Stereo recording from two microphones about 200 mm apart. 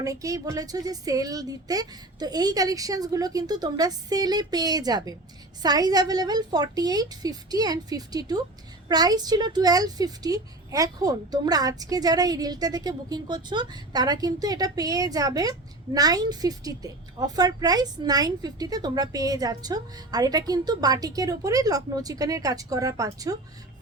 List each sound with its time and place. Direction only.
0.0 s speech: 15° right (ahead or behind)